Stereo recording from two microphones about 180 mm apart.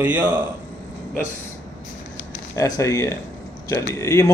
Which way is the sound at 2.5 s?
15° left (ahead or behind).